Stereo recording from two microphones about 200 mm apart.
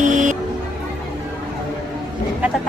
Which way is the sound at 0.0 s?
40° right (ahead or behind).